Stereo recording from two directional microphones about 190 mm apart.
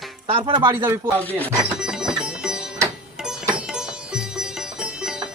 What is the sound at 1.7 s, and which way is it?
Sitar, 5° right (ahead or behind).